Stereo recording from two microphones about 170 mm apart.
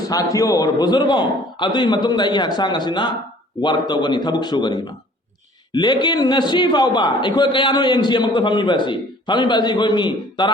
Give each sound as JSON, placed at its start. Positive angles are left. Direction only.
{"t": 0.1, "sound": "a man's voice", "side_deg": 20}